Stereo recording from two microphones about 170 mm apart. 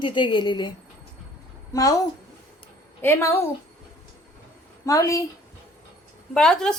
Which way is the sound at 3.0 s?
15° left (ahead or behind).